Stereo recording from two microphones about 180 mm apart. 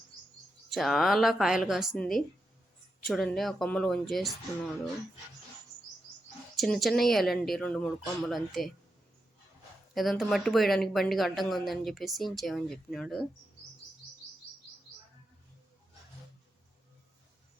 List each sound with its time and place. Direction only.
0.7 s speech: centre (ahead or behind)
6.6 s speech: centre (ahead or behind)
9.9 s speech: centre (ahead or behind)